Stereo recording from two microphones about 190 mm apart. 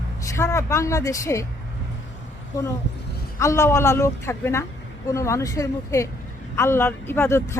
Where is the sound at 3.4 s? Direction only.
15° left (ahead or behind).